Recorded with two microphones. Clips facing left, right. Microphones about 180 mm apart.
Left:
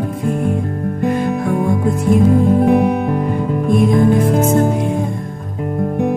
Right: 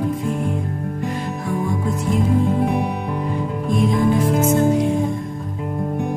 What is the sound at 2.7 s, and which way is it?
Music, 70° left (ahead or behind).